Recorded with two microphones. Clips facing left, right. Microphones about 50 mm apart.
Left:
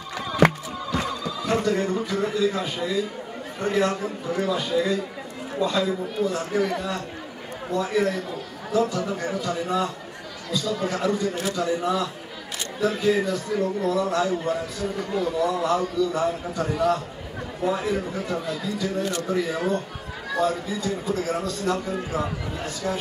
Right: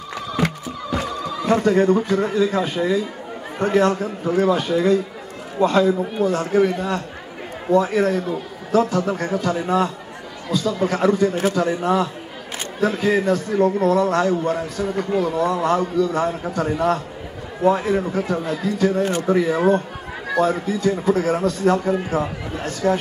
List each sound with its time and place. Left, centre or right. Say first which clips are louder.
1.4 s a man's voice: right 7 dB; right
6.5 s a man's voice: right 6 dB; right
8.7 s a man's voice: right 5 dB; right
10.9 s a man's voice: right 9 dB; right
13.3 s a man's voice: right 7 dB; right
17.6 s a man's voice: right 7 dB; right
22.8 s speech: right 9 dB; right